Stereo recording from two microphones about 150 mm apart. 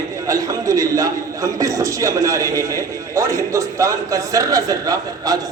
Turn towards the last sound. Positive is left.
turn(degrees=-25)  # may be behind; listen again after turning